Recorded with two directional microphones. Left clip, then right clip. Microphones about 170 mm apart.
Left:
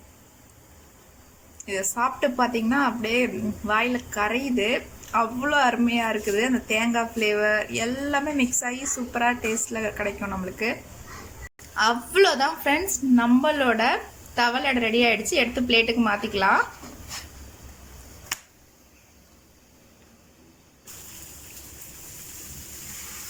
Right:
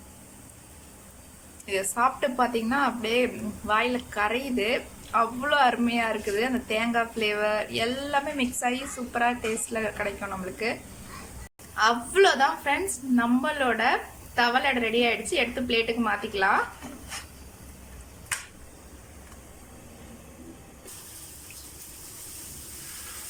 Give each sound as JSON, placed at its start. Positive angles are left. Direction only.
{"t": 1.6, "sound": "a woman's voice", "side_deg": 0}